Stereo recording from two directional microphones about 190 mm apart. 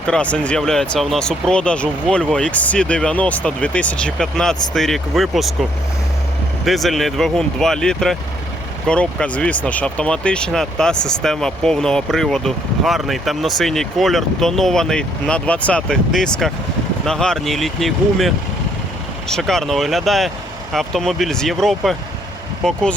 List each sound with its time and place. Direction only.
0.1 s speech: 5° left (ahead or behind)
6.7 s speech: centre (ahead or behind)